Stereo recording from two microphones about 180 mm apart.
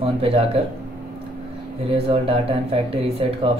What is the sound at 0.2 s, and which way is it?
Speech, 30° right (ahead or behind).